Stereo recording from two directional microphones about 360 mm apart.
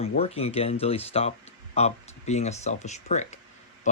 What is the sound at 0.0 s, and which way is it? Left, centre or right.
Speech, centre.